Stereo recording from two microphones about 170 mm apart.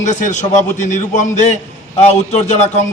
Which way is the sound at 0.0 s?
45° left (ahead or behind).